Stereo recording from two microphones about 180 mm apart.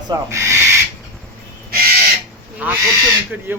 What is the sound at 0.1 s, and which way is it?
Owl, 15° right (ahead or behind).